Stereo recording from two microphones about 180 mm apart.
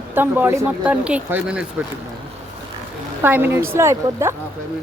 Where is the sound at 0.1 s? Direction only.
10° right (ahead or behind).